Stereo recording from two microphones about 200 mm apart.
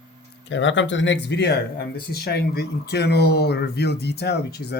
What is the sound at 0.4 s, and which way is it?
Speech, 65° left (ahead or behind).